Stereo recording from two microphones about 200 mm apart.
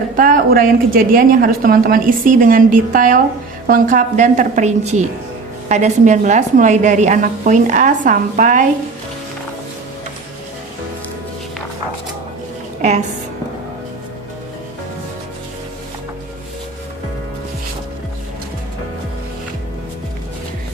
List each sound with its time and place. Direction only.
0.2 s a woman's voice: 45° right (ahead or behind)
12.8 s a woman's voice: 35° right (ahead or behind)